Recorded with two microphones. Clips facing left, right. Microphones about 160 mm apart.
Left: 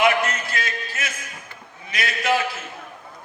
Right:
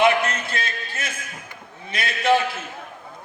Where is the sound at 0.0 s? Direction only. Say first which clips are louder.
Right 1 dB; 30° right (ahead or behind).